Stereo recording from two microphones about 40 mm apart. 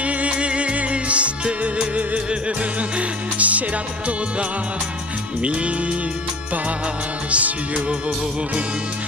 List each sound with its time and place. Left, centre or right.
0.0 s music: right
5.4 s music: right
7.2 s music: right